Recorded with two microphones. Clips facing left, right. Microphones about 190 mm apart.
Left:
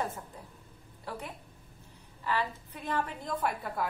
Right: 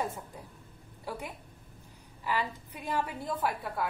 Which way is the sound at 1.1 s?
10° right (ahead or behind).